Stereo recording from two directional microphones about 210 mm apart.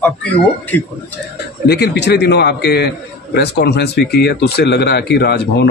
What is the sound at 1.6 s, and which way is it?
A man's voice, 50° left (ahead or behind).